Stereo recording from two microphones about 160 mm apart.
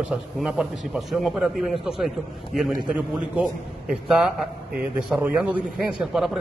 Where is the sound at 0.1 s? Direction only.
5° right (ahead or behind).